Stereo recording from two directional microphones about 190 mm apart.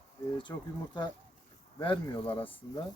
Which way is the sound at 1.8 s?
25° left (ahead or behind).